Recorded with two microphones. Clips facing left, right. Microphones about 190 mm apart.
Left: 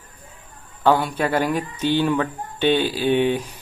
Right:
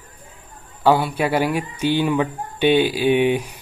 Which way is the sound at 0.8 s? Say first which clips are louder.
Right 1 dB; 10° right (ahead or behind).